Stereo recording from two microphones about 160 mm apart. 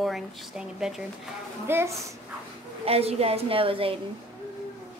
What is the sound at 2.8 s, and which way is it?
A woman's voice, 40° right (ahead or behind).